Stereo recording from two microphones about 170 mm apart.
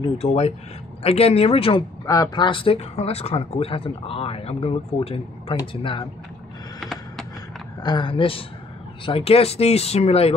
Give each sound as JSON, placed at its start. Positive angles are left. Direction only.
{"t": 0.0, "sound": "speech", "side_deg": 35}
{"t": 6.8, "sound": "a sound", "side_deg": 0}
{"t": 7.8, "sound": "speech", "side_deg": 25}